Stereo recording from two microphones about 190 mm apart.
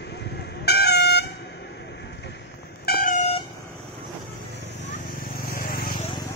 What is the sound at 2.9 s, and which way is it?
Vehicle, 50° left (ahead or behind).